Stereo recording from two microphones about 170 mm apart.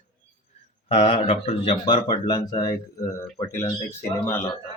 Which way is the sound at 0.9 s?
35° left (ahead or behind).